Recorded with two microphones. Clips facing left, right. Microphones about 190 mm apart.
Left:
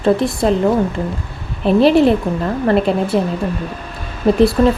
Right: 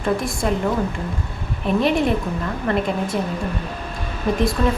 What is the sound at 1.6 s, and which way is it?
A woman's voice, 30° left (ahead or behind).